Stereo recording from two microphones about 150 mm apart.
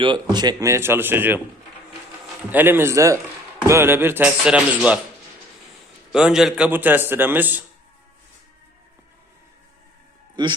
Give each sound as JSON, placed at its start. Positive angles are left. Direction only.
{"t": 0.0, "sound": "a man's voice", "side_deg": -30}
{"t": 2.5, "sound": "a man's voice", "side_deg": -15}
{"t": 6.1, "sound": "a man's voice", "side_deg": -5}
{"t": 10.4, "sound": "speech", "side_deg": -30}